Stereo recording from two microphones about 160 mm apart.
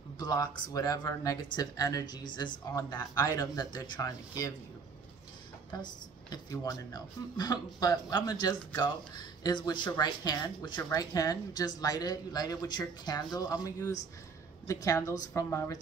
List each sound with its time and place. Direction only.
0.2 s speech: 25° left (ahead or behind)
6.3 s speech: 20° left (ahead or behind)